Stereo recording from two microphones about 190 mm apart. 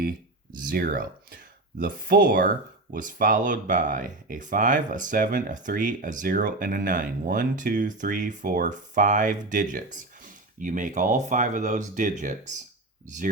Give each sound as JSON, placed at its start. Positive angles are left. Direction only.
{"t": 0.6, "sound": "speech", "side_deg": -50}